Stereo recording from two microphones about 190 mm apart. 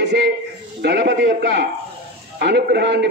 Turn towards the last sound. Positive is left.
turn(degrees=-65)  # may be behind; listen again after turning